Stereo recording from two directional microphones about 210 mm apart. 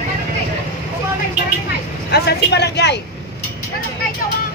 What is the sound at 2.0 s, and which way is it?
Speech, 50° left (ahead or behind).